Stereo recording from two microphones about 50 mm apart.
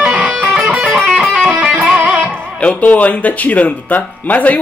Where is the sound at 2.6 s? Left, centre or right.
Left.